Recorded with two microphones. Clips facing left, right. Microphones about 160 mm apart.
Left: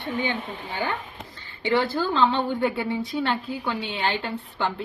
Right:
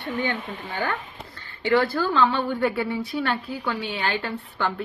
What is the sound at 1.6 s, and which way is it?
A woman's voice, 20° left (ahead or behind).